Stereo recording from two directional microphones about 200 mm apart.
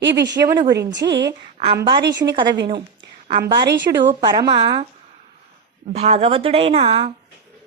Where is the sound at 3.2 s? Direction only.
40° right (ahead or behind).